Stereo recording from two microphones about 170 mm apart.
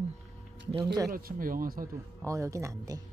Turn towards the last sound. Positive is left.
turn(degrees=-20)  # may be behind; listen again after turning